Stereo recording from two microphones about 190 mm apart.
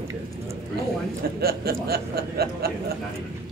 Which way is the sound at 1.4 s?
55° right (ahead or behind).